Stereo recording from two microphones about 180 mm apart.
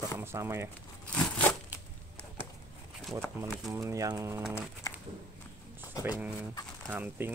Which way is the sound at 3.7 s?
20° right (ahead or behind).